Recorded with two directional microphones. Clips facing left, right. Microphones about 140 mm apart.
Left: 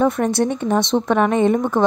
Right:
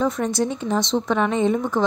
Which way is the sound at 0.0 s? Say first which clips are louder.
Left 4 dB; 60° left (ahead or behind).